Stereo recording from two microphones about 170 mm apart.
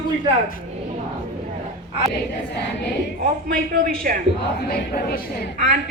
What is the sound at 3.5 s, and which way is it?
Speech, 55° right (ahead or behind).